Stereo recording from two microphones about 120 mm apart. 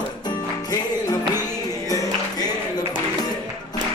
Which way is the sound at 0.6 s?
30° left (ahead or behind).